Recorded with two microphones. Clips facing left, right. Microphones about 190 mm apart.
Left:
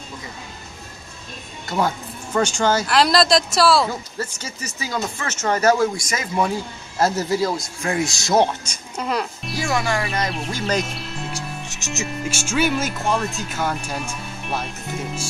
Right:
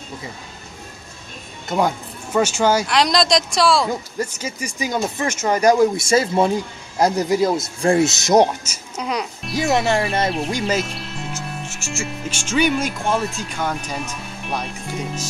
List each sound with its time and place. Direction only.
1.7 s speech: 15° right (ahead or behind)
2.9 s speech: 5° left (ahead or behind)
4.2 s speech: 10° right (ahead or behind)
5.9 s speech: 25° right (ahead or behind)
7.0 s speech: 15° right (ahead or behind)
8.6 s speech: 5° right (ahead or behind)
9.6 s speech: 25° right (ahead or behind)
10.3 s speech: centre (ahead or behind)
11.3 s music: 20° left (ahead or behind)
12.1 s speech: 10° left (ahead or behind)